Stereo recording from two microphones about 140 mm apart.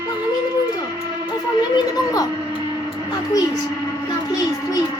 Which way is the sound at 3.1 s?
25° left (ahead or behind).